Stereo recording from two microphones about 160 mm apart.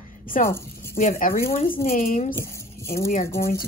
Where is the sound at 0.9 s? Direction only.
60° left (ahead or behind).